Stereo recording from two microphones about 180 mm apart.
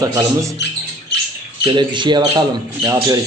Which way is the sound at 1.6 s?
25° right (ahead or behind).